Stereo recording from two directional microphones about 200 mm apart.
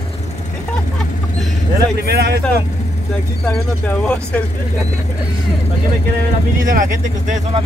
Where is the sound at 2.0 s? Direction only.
50° right (ahead or behind).